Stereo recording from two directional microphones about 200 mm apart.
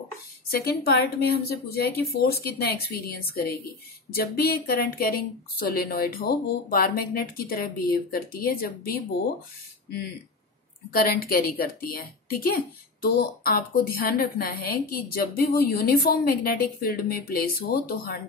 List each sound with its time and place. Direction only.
0.5 s a woman's voice: 50° left (ahead or behind)
10.9 s a woman's voice: 45° left (ahead or behind)